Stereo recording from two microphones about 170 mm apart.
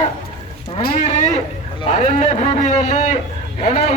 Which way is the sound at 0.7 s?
40° left (ahead or behind).